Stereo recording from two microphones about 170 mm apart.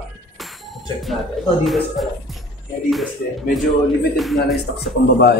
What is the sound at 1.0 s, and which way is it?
Speech, centre (ahead or behind).